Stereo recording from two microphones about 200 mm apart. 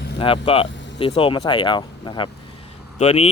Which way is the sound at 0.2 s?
25° left (ahead or behind).